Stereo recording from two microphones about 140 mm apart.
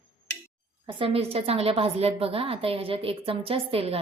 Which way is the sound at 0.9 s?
40° right (ahead or behind).